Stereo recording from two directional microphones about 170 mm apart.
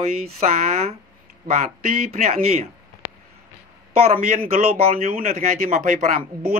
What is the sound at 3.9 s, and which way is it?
A man's voice, 35° right (ahead or behind).